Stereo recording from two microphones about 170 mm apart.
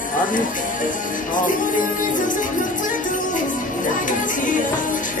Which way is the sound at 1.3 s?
50° left (ahead or behind).